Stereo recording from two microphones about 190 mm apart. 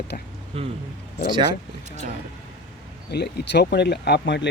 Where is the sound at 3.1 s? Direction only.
60° left (ahead or behind).